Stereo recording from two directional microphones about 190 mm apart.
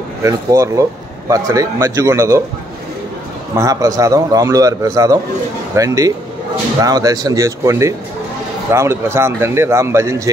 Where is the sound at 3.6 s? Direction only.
15° right (ahead or behind).